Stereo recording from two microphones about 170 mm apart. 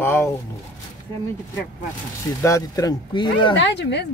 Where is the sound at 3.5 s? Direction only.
90° left.